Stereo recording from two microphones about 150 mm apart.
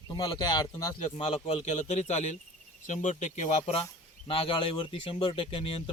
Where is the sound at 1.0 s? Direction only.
40° left (ahead or behind).